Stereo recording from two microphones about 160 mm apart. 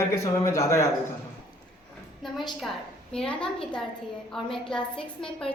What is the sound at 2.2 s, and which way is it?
A woman's voice, centre (ahead or behind).